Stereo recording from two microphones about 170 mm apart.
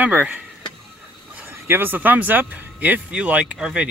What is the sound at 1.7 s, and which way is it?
Speech, 10° right (ahead or behind).